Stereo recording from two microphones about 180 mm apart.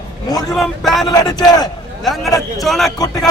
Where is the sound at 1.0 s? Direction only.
20° left (ahead or behind).